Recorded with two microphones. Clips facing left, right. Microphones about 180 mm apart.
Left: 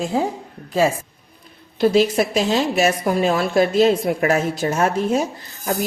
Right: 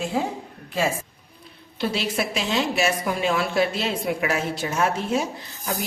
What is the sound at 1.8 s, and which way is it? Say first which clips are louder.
A woman's voice: left 10 dB; 45° left (ahead or behind).